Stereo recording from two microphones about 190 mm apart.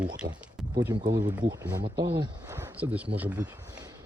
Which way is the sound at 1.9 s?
60° right (ahead or behind).